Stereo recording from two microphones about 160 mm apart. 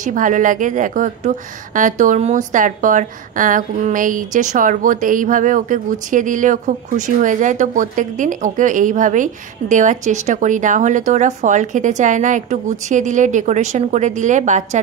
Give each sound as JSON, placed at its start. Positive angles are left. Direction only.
{"t": 0.0, "sound": "a woman's voice", "side_deg": -55}